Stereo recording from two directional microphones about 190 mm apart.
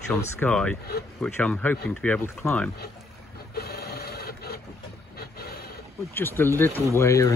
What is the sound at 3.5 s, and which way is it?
Printer, 55° left (ahead or behind).